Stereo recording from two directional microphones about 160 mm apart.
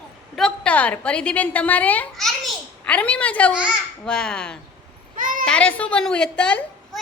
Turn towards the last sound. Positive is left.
turn(degrees=5)  # may be behind; listen again after turning